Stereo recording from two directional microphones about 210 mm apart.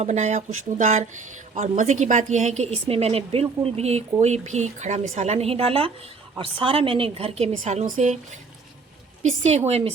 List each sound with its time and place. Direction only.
0.0 s a woman's voice: 35° right (ahead or behind)
9.4 s a woman's voice: 30° right (ahead or behind)